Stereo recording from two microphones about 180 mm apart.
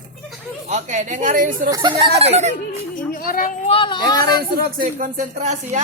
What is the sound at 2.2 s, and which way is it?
Speech, 35° right (ahead or behind).